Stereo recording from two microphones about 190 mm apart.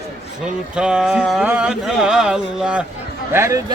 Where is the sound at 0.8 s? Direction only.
5° right (ahead or behind).